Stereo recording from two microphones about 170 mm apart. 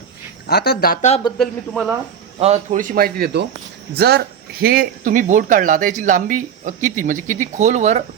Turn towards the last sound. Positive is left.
turn(degrees=-45)  # may be behind; listen again after turning